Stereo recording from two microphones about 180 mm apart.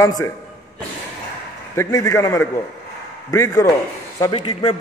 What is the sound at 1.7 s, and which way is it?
A man's voice, 20° left (ahead or behind).